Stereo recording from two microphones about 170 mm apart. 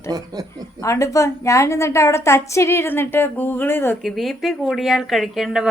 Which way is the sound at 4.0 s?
Centre (ahead or behind).